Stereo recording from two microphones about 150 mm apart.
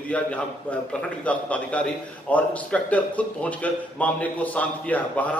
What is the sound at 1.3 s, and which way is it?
A man's voice, 10° left (ahead or behind).